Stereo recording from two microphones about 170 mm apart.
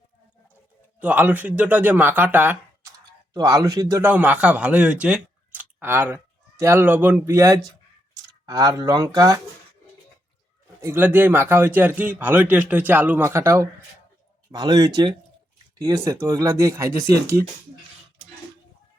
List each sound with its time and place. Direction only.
0.9 s a man's voice: 10° right (ahead or behind)
4.1 s speech: 10° right (ahead or behind)
10.8 s a man's voice: 15° right (ahead or behind)